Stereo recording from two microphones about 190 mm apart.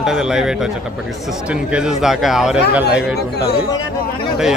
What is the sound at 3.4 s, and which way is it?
Speech, 55° left (ahead or behind).